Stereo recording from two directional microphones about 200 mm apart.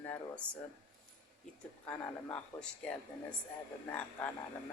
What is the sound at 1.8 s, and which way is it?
Speech, 10° left (ahead or behind).